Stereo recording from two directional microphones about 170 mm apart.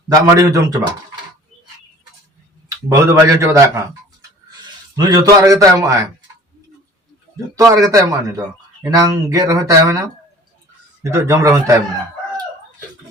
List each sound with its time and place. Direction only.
0.3 s a man's voice: 20° right (ahead or behind)
2.6 s a man's voice: 15° right (ahead or behind)
7.5 s a man's voice: 20° right (ahead or behind)